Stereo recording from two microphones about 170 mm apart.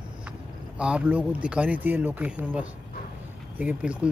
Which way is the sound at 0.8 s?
5° right (ahead or behind).